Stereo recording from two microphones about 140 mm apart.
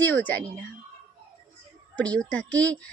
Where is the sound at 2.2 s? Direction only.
10° left (ahead or behind).